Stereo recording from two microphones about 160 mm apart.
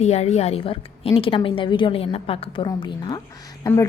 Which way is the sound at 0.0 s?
40° left (ahead or behind).